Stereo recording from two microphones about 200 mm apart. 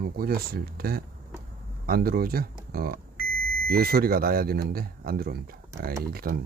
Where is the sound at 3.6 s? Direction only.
50° right (ahead or behind).